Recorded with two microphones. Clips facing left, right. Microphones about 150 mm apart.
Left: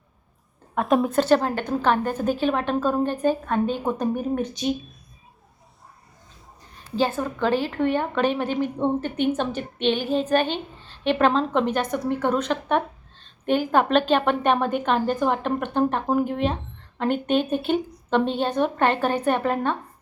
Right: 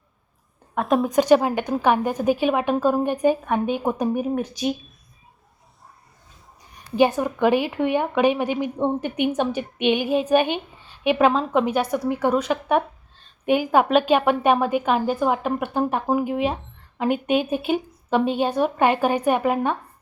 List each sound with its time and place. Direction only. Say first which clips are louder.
0.8 s a woman's voice: even; centre (ahead or behind)
1.1 s a woman's voice: right 3 dB; 10° right (ahead or behind)
6.9 s a woman's voice: right 5 dB; 15° right (ahead or behind)